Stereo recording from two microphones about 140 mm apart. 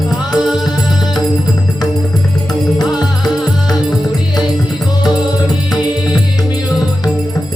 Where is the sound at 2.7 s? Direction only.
30° left (ahead or behind).